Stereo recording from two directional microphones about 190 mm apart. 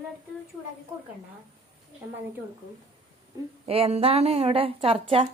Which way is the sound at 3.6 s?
30° right (ahead or behind).